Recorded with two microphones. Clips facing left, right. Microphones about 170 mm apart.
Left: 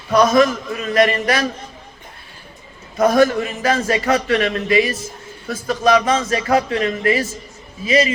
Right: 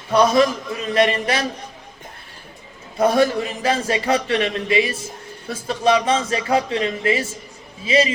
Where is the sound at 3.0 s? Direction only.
30° right (ahead or behind).